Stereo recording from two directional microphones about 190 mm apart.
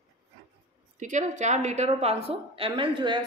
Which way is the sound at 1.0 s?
40° right (ahead or behind).